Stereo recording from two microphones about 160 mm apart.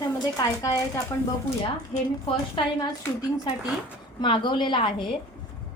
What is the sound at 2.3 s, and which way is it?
Speech, 30° left (ahead or behind).